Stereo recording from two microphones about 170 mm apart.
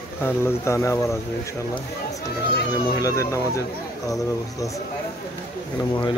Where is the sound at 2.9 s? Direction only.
20° left (ahead or behind).